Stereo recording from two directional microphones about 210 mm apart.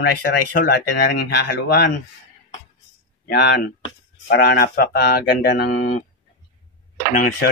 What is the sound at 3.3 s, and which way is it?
Speech, 50° left (ahead or behind).